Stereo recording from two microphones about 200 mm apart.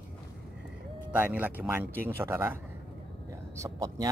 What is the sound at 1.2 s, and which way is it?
Speech, 10° right (ahead or behind).